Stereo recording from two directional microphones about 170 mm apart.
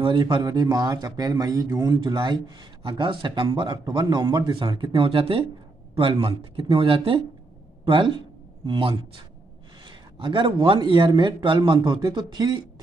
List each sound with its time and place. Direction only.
0.0 s speech: 25° right (ahead or behind)